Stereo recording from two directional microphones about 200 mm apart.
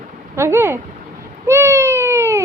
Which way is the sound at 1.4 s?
15° right (ahead or behind).